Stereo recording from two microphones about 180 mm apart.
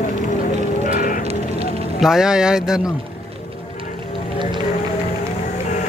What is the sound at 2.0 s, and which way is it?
Speech, 5° right (ahead or behind).